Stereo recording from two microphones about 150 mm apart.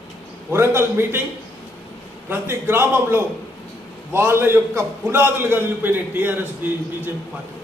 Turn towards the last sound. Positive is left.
turn(degrees=-15)  # may be behind; listen again after turning